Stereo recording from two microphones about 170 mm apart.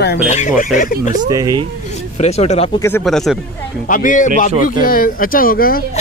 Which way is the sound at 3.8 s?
50° left (ahead or behind).